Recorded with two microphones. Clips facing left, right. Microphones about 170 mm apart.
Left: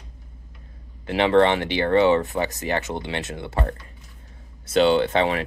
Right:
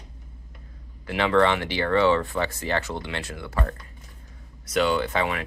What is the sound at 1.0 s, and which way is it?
Speech, 25° left (ahead or behind).